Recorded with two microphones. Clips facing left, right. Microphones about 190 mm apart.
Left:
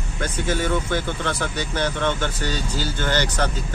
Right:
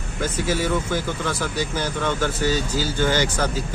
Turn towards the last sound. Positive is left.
turn(degrees=-10)  # may be behind; listen again after turning